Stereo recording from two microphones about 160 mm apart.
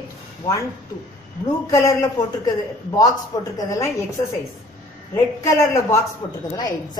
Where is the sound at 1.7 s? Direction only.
20° left (ahead or behind).